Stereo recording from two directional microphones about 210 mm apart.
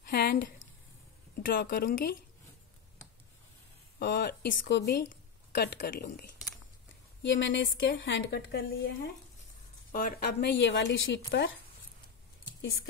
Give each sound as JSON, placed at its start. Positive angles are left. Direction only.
{"t": 0.0, "sound": "a sound", "side_deg": 45}
{"t": 1.3, "sound": "speech", "side_deg": 45}
{"t": 4.0, "sound": "speech", "side_deg": 50}
{"t": 7.2, "sound": "a woman's voice", "side_deg": 60}
{"t": 9.9, "sound": "a woman's voice", "side_deg": 45}